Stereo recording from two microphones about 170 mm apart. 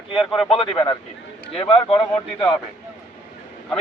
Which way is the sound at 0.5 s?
30° left (ahead or behind).